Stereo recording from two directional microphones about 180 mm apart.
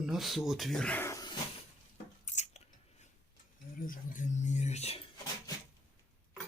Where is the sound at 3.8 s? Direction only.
50° left (ahead or behind).